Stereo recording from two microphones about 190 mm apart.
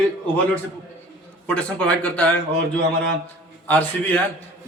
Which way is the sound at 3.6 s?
10° left (ahead or behind).